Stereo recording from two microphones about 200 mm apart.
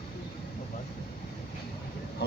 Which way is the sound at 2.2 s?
55° left (ahead or behind).